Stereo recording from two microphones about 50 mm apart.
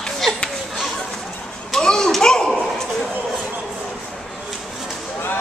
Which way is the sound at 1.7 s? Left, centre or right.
Centre.